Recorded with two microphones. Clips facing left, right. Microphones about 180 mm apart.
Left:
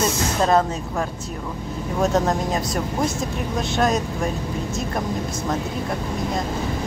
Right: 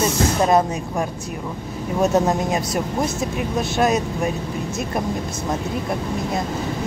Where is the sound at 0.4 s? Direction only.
15° right (ahead or behind).